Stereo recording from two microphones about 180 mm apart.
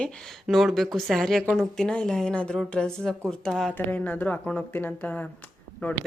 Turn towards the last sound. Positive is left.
turn(degrees=10)  # may be behind; listen again after turning